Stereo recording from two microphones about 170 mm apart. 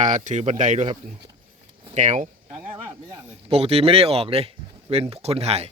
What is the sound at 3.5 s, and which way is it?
Speech, 35° right (ahead or behind).